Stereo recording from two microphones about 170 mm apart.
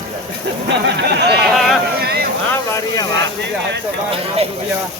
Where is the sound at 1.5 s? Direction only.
Centre (ahead or behind).